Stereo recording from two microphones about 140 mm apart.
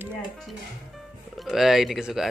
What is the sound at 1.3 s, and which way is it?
Speech, centre (ahead or behind).